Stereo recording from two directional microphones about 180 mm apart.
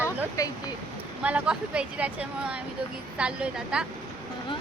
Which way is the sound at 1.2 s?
5° right (ahead or behind).